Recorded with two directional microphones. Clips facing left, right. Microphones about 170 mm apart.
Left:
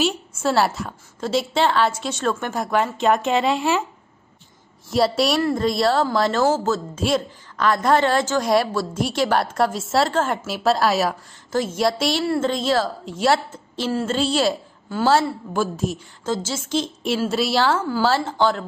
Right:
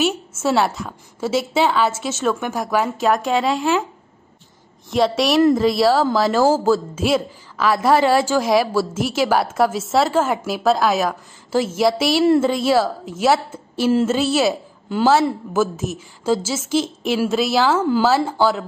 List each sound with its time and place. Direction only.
0.0 s a woman's voice: centre (ahead or behind)
4.9 s a woman's voice: centre (ahead or behind)
14.9 s a woman's voice: 15° right (ahead or behind)
15.5 s a woman's voice: 5° right (ahead or behind)
17.7 s speech: 20° right (ahead or behind)
18.0 s a woman's voice: 5° right (ahead or behind)